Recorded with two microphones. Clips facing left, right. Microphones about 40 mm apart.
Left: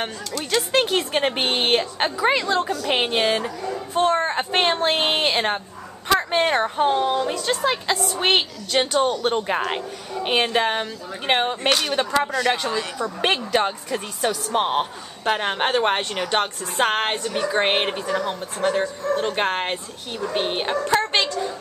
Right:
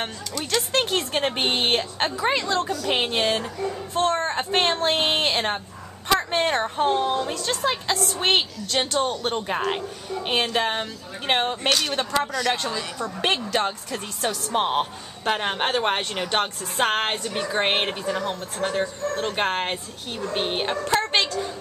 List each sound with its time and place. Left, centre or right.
0.0 s speech: centre
14.5 s a man's voice: centre